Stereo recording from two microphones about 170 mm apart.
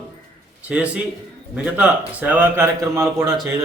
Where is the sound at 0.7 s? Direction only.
5° right (ahead or behind).